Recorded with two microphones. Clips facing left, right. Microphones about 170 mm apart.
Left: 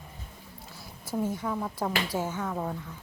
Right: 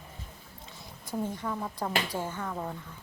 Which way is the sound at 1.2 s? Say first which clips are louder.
Left 3 dB; 10° left (ahead or behind).